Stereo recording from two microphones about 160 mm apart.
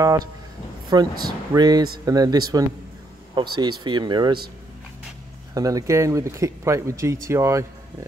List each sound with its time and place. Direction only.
0.9 s speech: 20° right (ahead or behind)
5.5 s speech: 20° right (ahead or behind)